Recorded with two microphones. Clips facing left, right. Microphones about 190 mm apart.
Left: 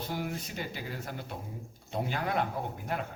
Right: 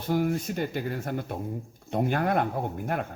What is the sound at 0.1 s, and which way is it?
Speech, 50° right (ahead or behind).